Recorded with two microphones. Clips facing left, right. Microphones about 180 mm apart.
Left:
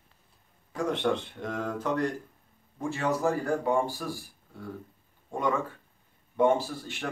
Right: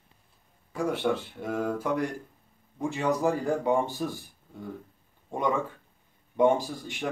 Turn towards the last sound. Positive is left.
turn(degrees=-15)  # may be behind; listen again after turning